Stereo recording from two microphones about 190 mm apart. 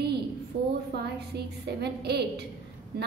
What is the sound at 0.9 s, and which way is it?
A woman's voice, 60° right (ahead or behind).